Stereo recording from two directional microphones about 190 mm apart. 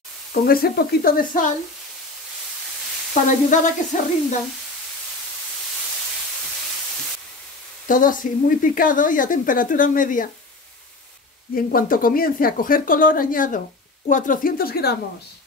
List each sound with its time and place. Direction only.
0.3 s speech: 50° left (ahead or behind)
3.3 s sizzle: 40° left (ahead or behind)
7.9 s speech: 45° left (ahead or behind)
11.5 s speech: 50° left (ahead or behind)